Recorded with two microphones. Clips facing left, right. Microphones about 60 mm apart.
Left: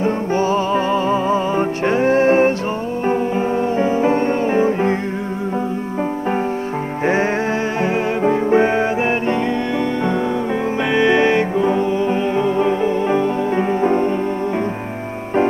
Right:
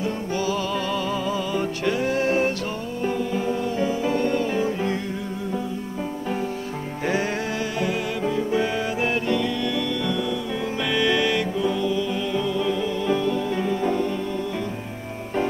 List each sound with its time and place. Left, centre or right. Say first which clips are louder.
0.0 s music: left 8 dB; left
7.8 s music: left 8 dB; left
10.9 s music: left 7 dB; left